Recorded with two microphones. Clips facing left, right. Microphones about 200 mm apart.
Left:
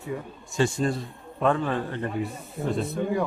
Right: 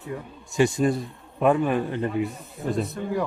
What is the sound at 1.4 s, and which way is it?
Speech, 15° right (ahead or behind).